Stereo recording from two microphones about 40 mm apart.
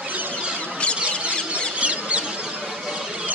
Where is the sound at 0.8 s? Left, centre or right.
Left.